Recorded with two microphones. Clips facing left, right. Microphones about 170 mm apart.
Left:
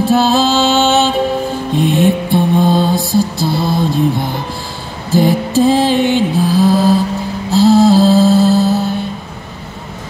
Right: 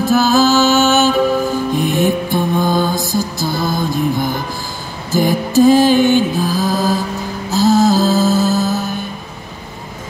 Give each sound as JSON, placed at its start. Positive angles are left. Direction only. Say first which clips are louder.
{"t": 0.0, "sound": "music", "louder": "left 1 dB", "side_deg": 30}
{"t": 7.5, "sound": "mantra", "louder": "left 4 dB", "side_deg": 30}